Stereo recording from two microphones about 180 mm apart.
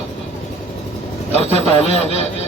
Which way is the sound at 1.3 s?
35° left (ahead or behind).